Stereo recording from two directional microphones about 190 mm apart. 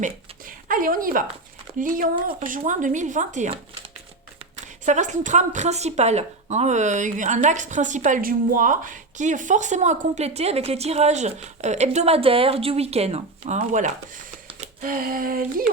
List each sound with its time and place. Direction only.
0.7 s female singing: 45° right (ahead or behind)
2.5 s speech: 40° right (ahead or behind)
14.8 s female singing: 50° right (ahead or behind)